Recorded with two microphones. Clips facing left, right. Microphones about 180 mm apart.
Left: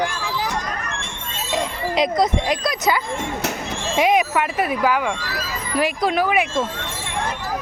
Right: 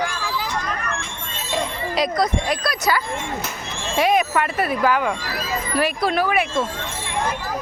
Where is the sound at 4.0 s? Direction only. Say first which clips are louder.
Left 1 dB; 15° left (ahead or behind).